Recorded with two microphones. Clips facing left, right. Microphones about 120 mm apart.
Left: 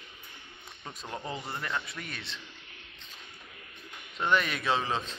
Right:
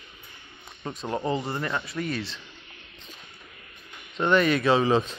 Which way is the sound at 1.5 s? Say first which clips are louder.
Right 6 dB; centre (ahead or behind).